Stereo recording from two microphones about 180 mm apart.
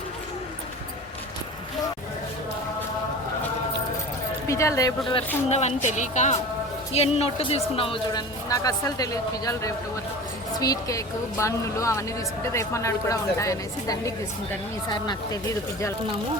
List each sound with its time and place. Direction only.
4.4 s a woman's voice: 15° left (ahead or behind)
5.1 s a woman's voice: 35° left (ahead or behind)